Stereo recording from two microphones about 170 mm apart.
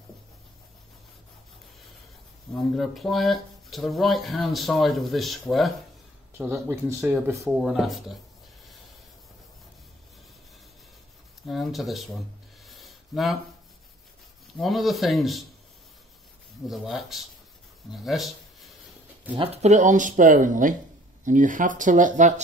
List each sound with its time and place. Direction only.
2.7 s speech: centre (ahead or behind)
6.3 s speech: 15° right (ahead or behind)
7.5 s speech: centre (ahead or behind)
11.4 s speech: centre (ahead or behind)
12.6 s a sound: centre (ahead or behind)
14.6 s speech: centre (ahead or behind)
16.6 s speech: centre (ahead or behind)
19.3 s speech: 35° right (ahead or behind)